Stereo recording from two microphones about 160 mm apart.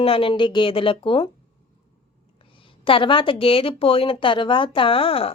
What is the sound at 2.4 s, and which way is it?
A woman's voice, 35° left (ahead or behind).